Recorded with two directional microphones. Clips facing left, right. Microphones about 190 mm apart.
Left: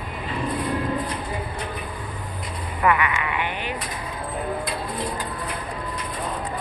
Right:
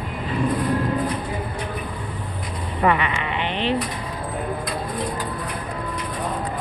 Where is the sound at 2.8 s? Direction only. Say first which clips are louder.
Right 1 dB; 25° right (ahead or behind).